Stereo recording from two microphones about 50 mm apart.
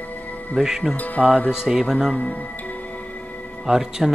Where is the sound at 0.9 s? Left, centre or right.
Left.